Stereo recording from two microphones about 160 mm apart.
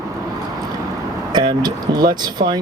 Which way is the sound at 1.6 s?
25° right (ahead or behind).